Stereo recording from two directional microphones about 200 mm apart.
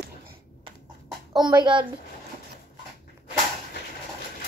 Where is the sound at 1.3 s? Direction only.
20° right (ahead or behind).